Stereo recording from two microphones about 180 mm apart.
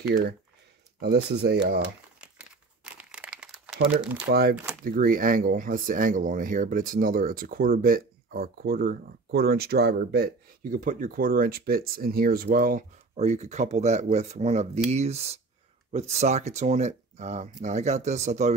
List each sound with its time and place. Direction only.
0.9 s speech: 65° right (ahead or behind)
3.0 s crumpling: 5° right (ahead or behind)
4.3 s speech: 60° right (ahead or behind); by 18.5 s 40° right (ahead or behind)